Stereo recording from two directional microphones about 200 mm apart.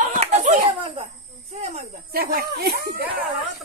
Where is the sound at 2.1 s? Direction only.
50° right (ahead or behind).